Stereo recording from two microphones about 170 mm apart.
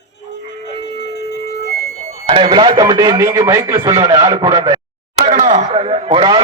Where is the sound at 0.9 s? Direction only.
80° left.